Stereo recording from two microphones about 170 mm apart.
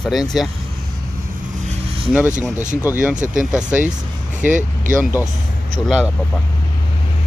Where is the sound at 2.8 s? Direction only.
10° right (ahead or behind).